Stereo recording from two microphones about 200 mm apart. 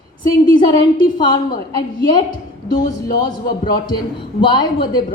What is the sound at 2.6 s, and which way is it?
Speech, 45° left (ahead or behind).